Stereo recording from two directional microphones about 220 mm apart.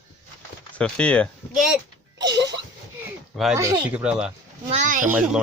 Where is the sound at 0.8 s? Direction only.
5° left (ahead or behind).